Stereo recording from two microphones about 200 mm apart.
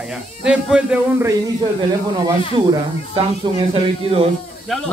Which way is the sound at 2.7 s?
25° right (ahead or behind).